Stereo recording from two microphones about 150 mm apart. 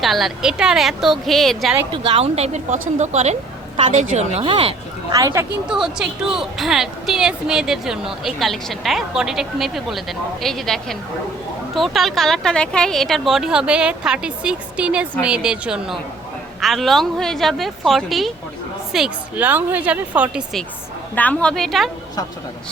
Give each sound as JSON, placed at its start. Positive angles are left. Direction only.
{"t": 0.0, "sound": "a woman's voice", "side_deg": 0}
{"t": 1.9, "sound": "speech", "side_deg": -35}
{"t": 5.1, "sound": "speech", "side_deg": -20}
{"t": 5.6, "sound": "a woman's voice", "side_deg": -5}
{"t": 21.2, "sound": "a woman's voice", "side_deg": 10}